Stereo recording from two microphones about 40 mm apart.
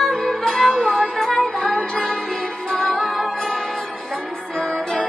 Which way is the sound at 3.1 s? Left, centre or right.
Centre.